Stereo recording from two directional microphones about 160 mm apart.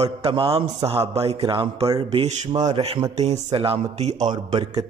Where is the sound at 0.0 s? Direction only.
35° right (ahead or behind).